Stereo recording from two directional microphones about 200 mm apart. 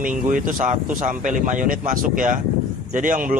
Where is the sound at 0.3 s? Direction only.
40° right (ahead or behind).